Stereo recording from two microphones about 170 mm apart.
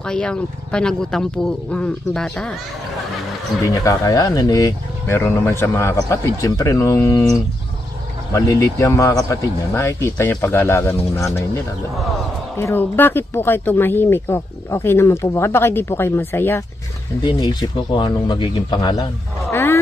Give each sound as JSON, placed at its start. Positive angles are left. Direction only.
{"t": 0.0, "sound": "speech", "side_deg": 5}
{"t": 3.6, "sound": "speech", "side_deg": 20}
{"t": 17.2, "sound": "speech", "side_deg": 25}
{"t": 19.5, "sound": "roaring cats", "side_deg": 15}